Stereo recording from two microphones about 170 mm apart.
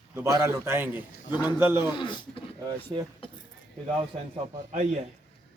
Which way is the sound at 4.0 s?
40° right (ahead or behind).